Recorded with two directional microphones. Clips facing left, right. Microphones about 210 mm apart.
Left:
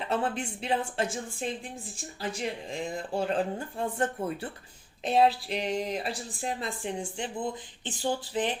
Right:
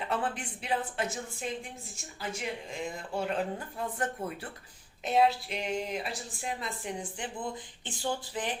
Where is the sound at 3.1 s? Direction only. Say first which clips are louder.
Left 3 dB; 30° left (ahead or behind).